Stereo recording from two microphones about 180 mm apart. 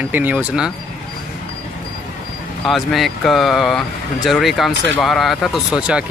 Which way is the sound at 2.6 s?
Centre (ahead or behind).